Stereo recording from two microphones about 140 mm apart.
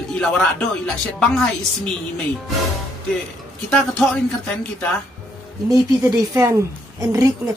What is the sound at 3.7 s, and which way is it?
Chopping, 5° left (ahead or behind).